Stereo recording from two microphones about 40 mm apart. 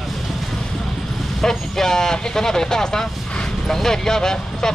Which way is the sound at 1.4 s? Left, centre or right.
Centre.